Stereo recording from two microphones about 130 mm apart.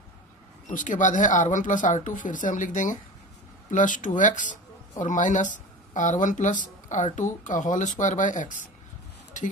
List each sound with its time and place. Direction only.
0.7 s speech: 80° left